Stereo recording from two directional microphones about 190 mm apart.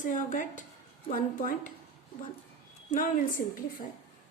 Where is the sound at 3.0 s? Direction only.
45° left (ahead or behind).